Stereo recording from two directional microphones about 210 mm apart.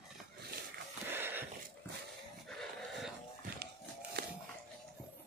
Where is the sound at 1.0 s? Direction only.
10° right (ahead or behind).